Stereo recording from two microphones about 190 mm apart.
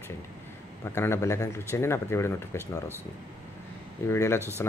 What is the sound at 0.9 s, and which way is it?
Speech, 15° left (ahead or behind).